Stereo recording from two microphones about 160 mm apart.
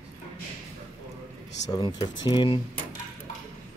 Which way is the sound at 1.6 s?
25° left (ahead or behind).